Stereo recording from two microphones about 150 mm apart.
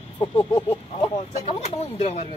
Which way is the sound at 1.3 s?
45° left (ahead or behind).